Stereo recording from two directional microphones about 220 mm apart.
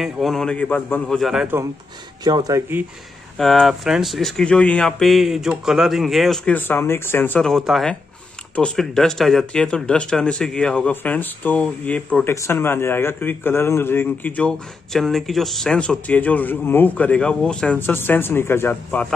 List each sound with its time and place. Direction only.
0.0 s speech: centre (ahead or behind)
2.2 s speech: 15° right (ahead or behind)
3.3 s speech: centre (ahead or behind)